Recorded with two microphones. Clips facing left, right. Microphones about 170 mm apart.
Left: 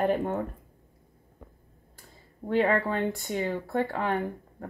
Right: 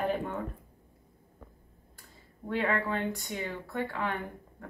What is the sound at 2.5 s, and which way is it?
Speech, 35° left (ahead or behind).